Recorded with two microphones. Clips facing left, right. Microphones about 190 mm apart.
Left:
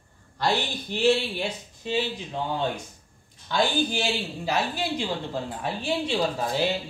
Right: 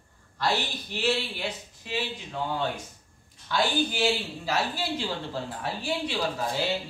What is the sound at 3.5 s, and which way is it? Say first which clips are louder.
A woman's voice: left 2 dB; 20° left (ahead or behind).